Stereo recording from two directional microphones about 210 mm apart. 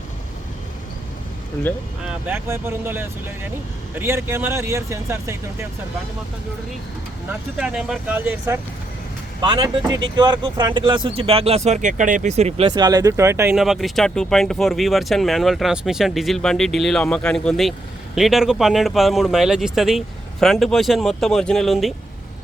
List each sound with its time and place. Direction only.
2.0 s speech: 10° right (ahead or behind)
7.3 s speech: 5° right (ahead or behind)